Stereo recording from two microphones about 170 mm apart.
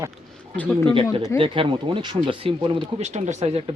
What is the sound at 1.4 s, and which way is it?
Speech, 30° right (ahead or behind).